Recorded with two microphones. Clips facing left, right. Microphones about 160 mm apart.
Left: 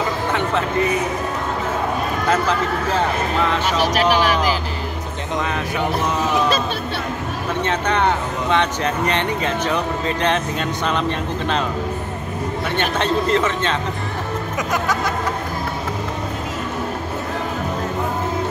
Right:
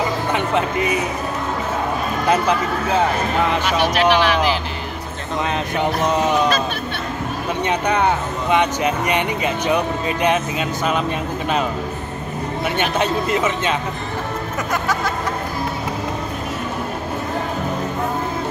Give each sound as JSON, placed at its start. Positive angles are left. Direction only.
{"t": 2.2, "sound": "speech", "side_deg": -15}
{"t": 3.9, "sound": "speech", "side_deg": 45}
{"t": 7.6, "sound": "speech", "side_deg": -10}
{"t": 12.7, "sound": "speech", "side_deg": -10}